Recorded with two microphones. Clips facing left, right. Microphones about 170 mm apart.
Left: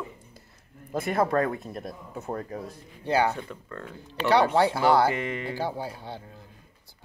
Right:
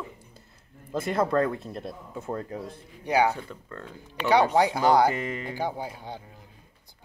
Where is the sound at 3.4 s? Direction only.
30° right (ahead or behind).